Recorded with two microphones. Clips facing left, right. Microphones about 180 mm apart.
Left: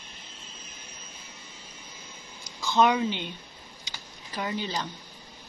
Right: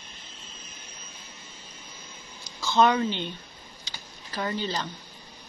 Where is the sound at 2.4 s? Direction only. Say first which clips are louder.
Right 1 dB; 15° left (ahead or behind).